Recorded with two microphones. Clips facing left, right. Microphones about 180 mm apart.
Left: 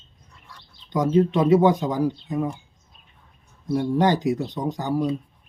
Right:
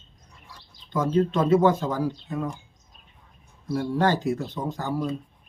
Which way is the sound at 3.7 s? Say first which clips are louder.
Left 3 dB; 15° left (ahead or behind).